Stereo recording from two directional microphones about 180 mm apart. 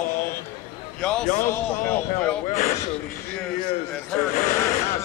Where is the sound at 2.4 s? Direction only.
40° left (ahead or behind).